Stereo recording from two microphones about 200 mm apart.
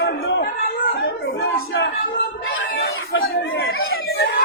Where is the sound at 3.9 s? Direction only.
55° left (ahead or behind).